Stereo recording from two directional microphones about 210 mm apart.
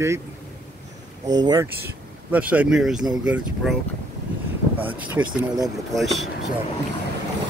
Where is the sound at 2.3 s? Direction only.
5° right (ahead or behind).